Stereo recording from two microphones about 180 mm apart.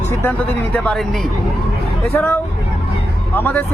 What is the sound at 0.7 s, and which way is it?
Speech, 5° left (ahead or behind).